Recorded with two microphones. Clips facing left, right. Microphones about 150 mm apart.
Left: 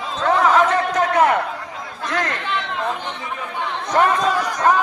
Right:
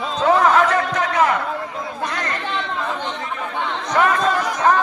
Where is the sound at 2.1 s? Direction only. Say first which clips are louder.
Left 3 dB; 90° left.